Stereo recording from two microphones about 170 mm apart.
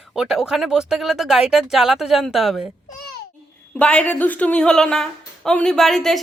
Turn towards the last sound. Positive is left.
turn(degrees=0)  # may be behind; listen again after turning